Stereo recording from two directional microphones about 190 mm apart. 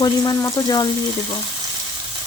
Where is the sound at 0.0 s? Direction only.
15° left (ahead or behind).